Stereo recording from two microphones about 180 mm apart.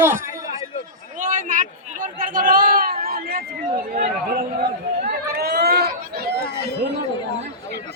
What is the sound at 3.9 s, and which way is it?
Speech, 60° right (ahead or behind).